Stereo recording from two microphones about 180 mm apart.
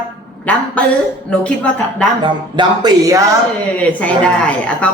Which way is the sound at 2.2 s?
25° right (ahead or behind).